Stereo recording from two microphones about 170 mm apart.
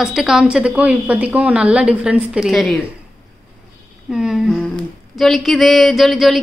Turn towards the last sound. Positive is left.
turn(degrees=0)  # may be behind; listen again after turning